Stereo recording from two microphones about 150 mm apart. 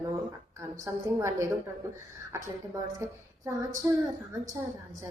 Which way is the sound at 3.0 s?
20° right (ahead or behind).